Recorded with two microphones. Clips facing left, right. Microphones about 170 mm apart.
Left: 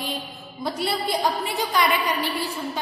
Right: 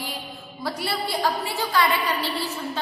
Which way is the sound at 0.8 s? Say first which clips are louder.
Left 2 dB; 20° left (ahead or behind).